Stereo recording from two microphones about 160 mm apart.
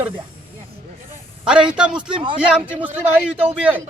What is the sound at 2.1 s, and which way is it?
Speech, 30° right (ahead or behind).